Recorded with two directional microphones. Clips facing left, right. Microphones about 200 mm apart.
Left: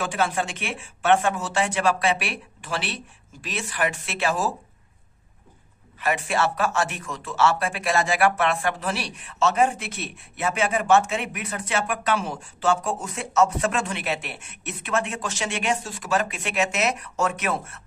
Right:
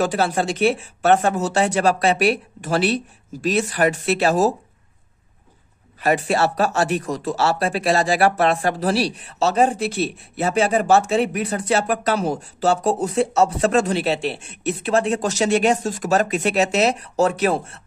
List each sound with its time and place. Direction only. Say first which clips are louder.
0.0 s speech: right 5 dB; 40° right (ahead or behind)
5.9 s speech: right 5 dB; 35° right (ahead or behind)